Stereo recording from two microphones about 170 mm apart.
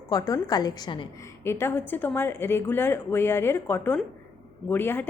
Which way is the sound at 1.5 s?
15° left (ahead or behind).